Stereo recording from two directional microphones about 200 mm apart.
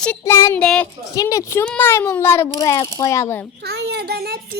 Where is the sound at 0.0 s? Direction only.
10° left (ahead or behind).